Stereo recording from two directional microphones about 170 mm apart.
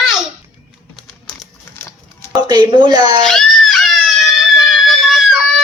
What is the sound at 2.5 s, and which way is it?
Speech, 25° right (ahead or behind).